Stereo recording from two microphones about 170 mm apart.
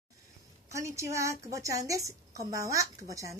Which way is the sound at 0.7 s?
15° right (ahead or behind).